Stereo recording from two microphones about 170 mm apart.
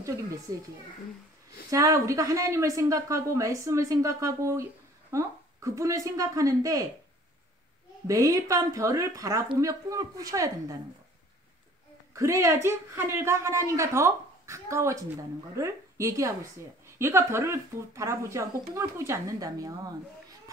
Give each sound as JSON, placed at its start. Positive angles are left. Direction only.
{"t": 0.5, "sound": "a woman's voice", "side_deg": -20}
{"t": 1.7, "sound": "a woman's voice", "side_deg": -20}
{"t": 8.1, "sound": "a woman's voice", "side_deg": -20}
{"t": 12.1, "sound": "speech", "side_deg": -20}